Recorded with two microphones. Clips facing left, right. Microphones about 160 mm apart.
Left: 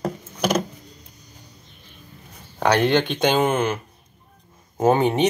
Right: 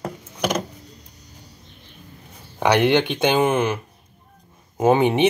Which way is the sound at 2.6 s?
10° right (ahead or behind).